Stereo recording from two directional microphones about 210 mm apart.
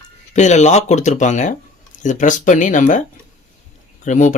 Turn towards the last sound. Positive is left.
turn(degrees=35)  # may be behind; listen again after turning